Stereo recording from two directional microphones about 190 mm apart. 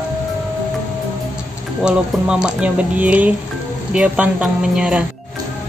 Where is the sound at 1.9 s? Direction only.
5° right (ahead or behind).